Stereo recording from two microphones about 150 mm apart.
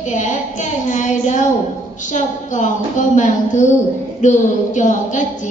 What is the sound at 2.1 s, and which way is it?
A woman's voice, 55° left (ahead or behind).